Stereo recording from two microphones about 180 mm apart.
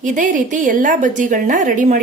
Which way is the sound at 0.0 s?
45° right (ahead or behind).